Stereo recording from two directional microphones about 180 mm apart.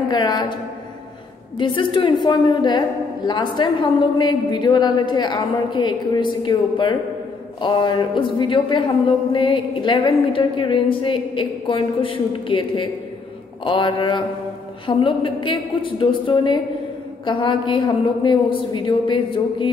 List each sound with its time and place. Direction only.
0.1 s speech: 25° left (ahead or behind)
1.6 s speech: 25° left (ahead or behind)